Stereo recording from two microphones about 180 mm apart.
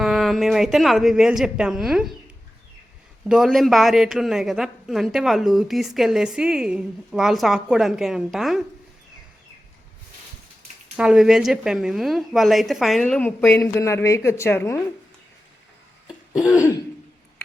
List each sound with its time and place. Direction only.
0.0 s a woman's voice: centre (ahead or behind)
3.2 s a woman's voice: centre (ahead or behind)
10.9 s a woman's voice: 5° right (ahead or behind); by 14.8 s 15° left (ahead or behind)
16.5 s throat clearing: 15° left (ahead or behind)